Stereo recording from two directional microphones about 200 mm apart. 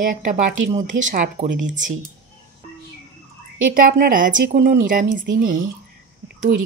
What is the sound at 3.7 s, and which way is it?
A woman's voice, 45° right (ahead or behind).